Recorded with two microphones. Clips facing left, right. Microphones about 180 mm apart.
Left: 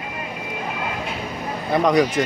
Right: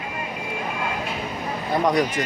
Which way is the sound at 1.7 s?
85° left.